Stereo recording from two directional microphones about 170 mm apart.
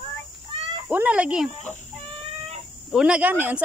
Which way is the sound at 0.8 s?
10° right (ahead or behind).